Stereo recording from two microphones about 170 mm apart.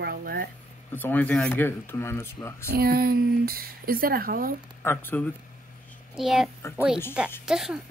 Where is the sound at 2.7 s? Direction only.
60° right (ahead or behind).